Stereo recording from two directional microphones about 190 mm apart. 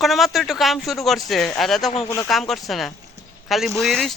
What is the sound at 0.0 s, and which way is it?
Speech, centre (ahead or behind).